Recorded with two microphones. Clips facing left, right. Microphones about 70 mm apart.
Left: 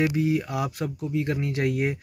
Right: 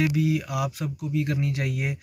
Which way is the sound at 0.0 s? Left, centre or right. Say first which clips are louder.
Left 1 dB; left.